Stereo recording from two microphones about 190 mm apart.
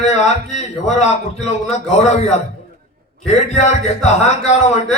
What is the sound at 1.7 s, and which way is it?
Speech, 35° left (ahead or behind).